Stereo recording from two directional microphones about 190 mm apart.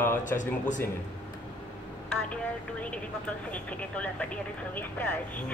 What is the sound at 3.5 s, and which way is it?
A woman's voice, 5° left (ahead or behind).